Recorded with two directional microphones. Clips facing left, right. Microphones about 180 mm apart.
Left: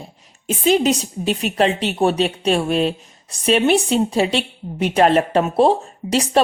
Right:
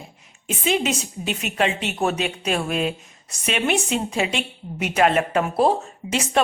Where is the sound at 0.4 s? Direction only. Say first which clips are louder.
Left 6 dB; 35° left (ahead or behind).